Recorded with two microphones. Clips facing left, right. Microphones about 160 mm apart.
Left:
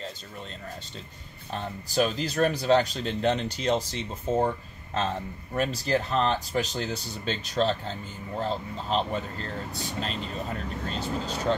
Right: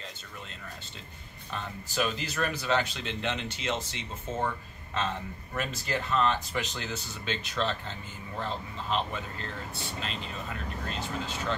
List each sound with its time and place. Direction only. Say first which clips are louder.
1.5 s speech: left 5 dB; 35° left (ahead or behind)